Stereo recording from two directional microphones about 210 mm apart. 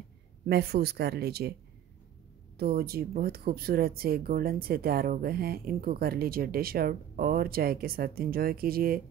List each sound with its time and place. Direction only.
0.5 s speech: 50° right (ahead or behind)
2.5 s speech: 45° right (ahead or behind)